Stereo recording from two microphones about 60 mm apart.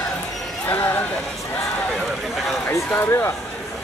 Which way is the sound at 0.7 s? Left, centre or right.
Left.